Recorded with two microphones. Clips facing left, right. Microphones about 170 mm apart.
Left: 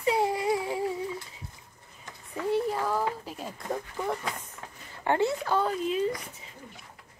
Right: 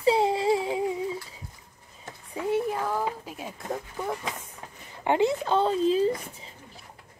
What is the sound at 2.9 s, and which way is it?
Speech, 15° right (ahead or behind).